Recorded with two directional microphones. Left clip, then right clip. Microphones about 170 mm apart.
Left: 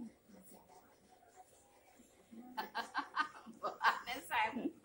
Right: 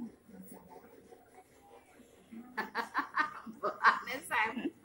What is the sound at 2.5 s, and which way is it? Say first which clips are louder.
Snicker: right 6 dB; 5° left (ahead or behind).